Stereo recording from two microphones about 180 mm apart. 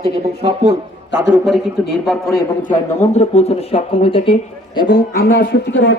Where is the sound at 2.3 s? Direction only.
45° left (ahead or behind).